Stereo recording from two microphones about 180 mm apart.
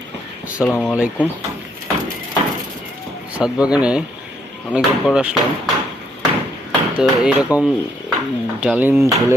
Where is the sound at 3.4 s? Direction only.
5° right (ahead or behind).